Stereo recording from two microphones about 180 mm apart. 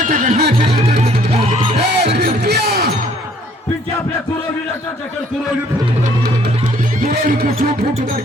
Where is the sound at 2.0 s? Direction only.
65° right (ahead or behind).